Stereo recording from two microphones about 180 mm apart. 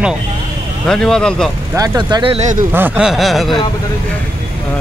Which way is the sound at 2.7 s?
10° right (ahead or behind).